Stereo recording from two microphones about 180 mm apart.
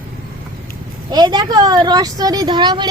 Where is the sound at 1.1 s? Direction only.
25° right (ahead or behind).